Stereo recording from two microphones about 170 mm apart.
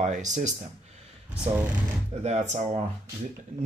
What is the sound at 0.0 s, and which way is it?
Speech, 45° right (ahead or behind).